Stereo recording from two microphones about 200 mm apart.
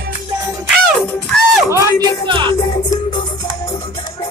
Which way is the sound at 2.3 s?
25° right (ahead or behind).